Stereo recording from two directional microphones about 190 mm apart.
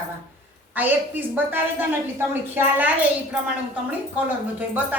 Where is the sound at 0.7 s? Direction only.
10° right (ahead or behind).